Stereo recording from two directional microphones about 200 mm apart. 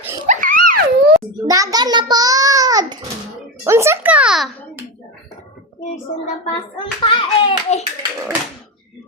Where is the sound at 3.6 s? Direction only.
15° right (ahead or behind).